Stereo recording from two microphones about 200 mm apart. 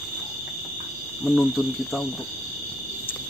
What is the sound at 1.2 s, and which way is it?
Speech, centre (ahead or behind).